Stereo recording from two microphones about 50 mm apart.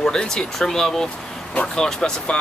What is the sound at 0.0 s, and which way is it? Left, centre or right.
Speech, centre.